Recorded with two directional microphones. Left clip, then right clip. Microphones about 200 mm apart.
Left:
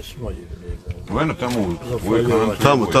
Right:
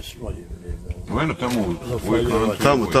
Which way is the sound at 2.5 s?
10° left (ahead or behind).